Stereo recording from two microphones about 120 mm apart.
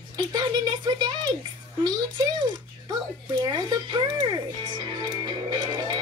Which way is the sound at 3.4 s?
35° right (ahead or behind).